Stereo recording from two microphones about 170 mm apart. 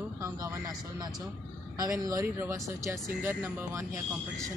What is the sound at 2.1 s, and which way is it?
Speech, 20° right (ahead or behind).